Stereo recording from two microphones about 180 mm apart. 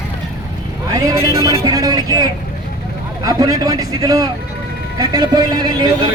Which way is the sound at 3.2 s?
20° right (ahead or behind).